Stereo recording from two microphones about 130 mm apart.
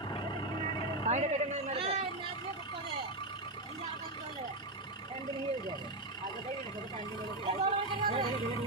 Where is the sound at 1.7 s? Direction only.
45° right (ahead or behind).